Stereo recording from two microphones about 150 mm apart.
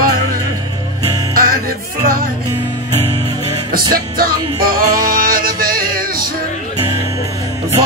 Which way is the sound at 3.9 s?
80° right.